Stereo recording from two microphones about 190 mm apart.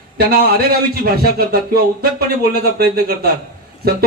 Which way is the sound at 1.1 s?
50° right (ahead or behind).